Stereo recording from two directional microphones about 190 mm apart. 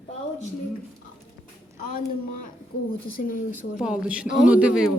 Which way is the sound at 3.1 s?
50° left (ahead or behind).